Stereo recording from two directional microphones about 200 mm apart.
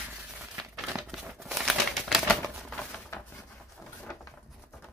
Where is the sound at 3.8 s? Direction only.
5° left (ahead or behind).